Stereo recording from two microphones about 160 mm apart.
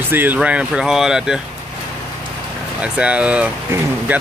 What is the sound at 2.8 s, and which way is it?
Speech, 5° right (ahead or behind).